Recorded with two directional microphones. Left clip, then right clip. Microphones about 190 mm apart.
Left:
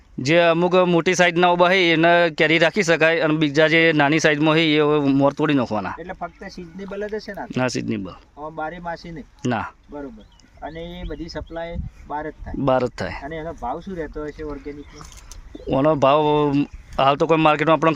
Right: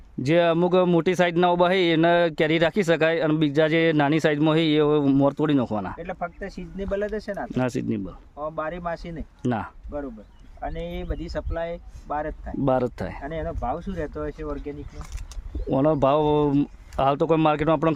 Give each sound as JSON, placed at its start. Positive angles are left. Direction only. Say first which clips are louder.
{"t": 0.2, "sound": "speech", "louder": "left 4 dB", "side_deg": -5}
{"t": 7.4, "sound": "speech", "louder": "left 6 dB", "side_deg": -5}
{"t": 12.6, "sound": "speech", "louder": "left 4 dB", "side_deg": -5}